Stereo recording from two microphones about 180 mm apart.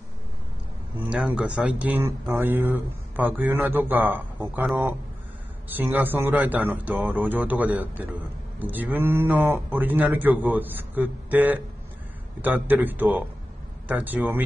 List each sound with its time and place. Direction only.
0.9 s speech: 5° right (ahead or behind)